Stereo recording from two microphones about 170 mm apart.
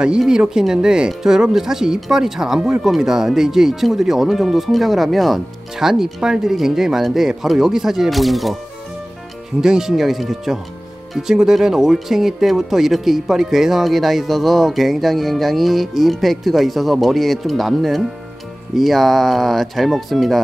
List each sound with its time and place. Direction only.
0.0 s speech: 5° right (ahead or behind)
9.6 s speech: 5° right (ahead or behind)